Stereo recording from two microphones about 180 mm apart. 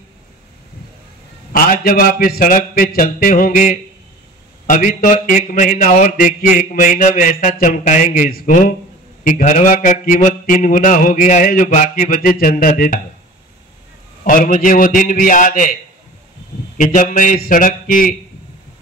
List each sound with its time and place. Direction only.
1.5 s mantra: 50° left (ahead or behind)
14.2 s mantra: 50° left (ahead or behind)